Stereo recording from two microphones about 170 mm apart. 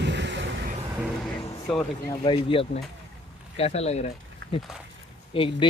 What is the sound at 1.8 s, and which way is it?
Speech, 30° left (ahead or behind).